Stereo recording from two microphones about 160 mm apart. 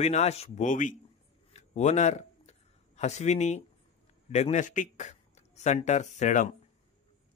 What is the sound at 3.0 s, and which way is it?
A man's voice, 45° left (ahead or behind).